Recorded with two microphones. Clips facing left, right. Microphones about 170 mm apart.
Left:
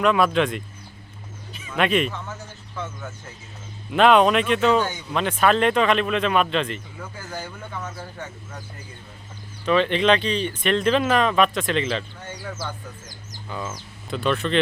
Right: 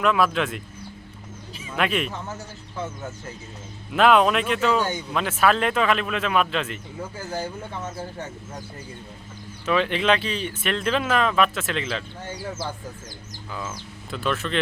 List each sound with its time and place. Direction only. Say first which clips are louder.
0.0 s speech: left 2 dB; centre (ahead or behind)
1.7 s speech: left 3 dB; centre (ahead or behind)
3.9 s speech: left 2 dB; 5° right (ahead or behind)
7.0 s speech: right 4 dB; 25° right (ahead or behind)
9.6 s speech: left 3 dB; 5° right (ahead or behind)
13.5 s speech: left 2 dB; centre (ahead or behind)